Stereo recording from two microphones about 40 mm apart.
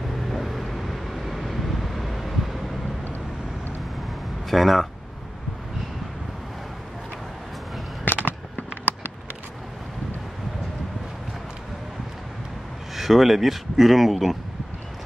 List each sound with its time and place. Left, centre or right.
0.1 s vehicle: centre
4.5 s speech: centre
8.1 s fireworks: left
12.9 s speech: centre